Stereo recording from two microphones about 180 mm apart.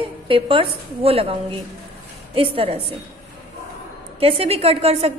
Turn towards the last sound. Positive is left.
turn(degrees=-35)  # may be behind; listen again after turning